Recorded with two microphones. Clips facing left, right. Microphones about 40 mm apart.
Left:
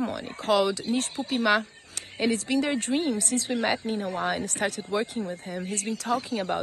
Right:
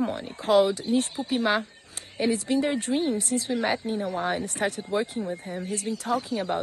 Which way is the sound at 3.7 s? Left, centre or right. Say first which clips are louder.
Even; left.